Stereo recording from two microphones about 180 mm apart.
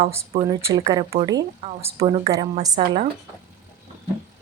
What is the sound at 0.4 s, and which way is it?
A woman's voice, 15° right (ahead or behind).